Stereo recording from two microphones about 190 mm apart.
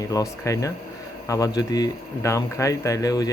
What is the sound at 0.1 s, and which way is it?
Speech, 15° left (ahead or behind).